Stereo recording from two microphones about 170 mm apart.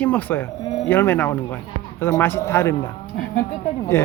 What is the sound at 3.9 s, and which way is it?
Speech, 15° left (ahead or behind).